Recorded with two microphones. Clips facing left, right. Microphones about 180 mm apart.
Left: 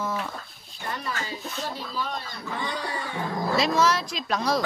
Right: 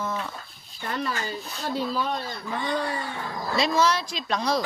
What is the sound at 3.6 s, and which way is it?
Speech, centre (ahead or behind).